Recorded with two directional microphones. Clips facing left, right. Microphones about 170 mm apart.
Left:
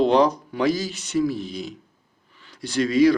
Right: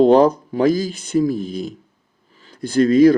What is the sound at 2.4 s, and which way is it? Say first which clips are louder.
Speech: right 7 dB; 50° right (ahead or behind).